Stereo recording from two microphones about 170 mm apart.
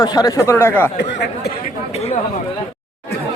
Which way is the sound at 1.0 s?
75° left (ahead or behind).